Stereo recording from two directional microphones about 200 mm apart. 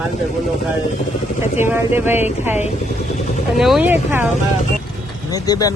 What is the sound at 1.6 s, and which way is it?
Speech, 10° right (ahead or behind).